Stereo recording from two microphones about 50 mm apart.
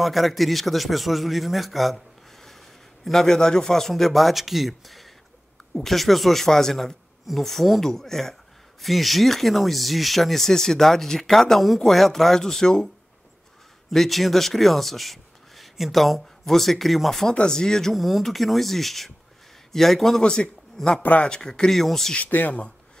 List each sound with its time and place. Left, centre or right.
0.0 s a man's voice: centre
17.9 s a man's voice: centre
22.1 s speech: left